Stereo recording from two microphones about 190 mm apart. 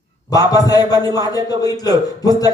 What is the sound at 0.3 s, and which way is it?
A man's voice, 20° left (ahead or behind).